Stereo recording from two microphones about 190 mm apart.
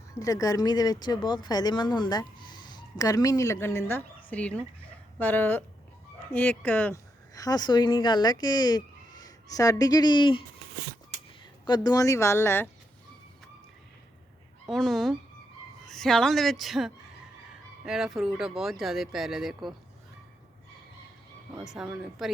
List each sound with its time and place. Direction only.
0.1 s speech: 15° left (ahead or behind)
11.6 s speech: 20° left (ahead or behind)
14.7 s speech: centre (ahead or behind)
21.6 s speech: centre (ahead or behind)